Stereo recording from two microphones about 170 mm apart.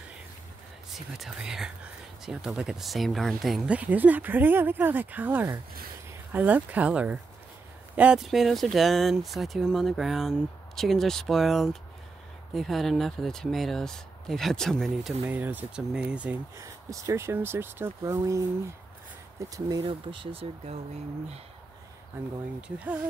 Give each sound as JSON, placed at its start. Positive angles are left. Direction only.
{"t": 0.9, "sound": "speech", "side_deg": 0}
{"t": 15.2, "sound": "speech", "side_deg": -10}
{"t": 16.5, "sound": "speech", "side_deg": -20}
{"t": 19.8, "sound": "speech", "side_deg": -30}